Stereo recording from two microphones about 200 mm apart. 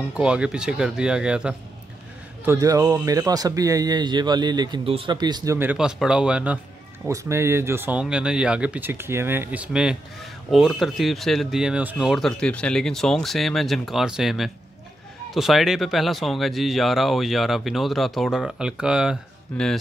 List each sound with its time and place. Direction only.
0.2 s speech: 5° right (ahead or behind)
2.4 s speech: 15° right (ahead or behind); by 19.8 s centre (ahead or behind)